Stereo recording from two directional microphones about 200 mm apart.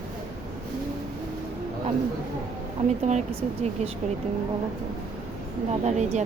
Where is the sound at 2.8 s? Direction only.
35° right (ahead or behind).